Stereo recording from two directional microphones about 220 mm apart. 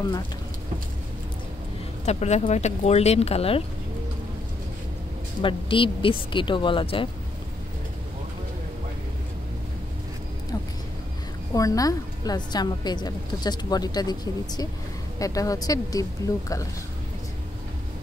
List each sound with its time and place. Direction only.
2.0 s speech: 30° left (ahead or behind)
5.4 s speech: 25° left (ahead or behind)
11.5 s a woman's voice: 15° left (ahead or behind)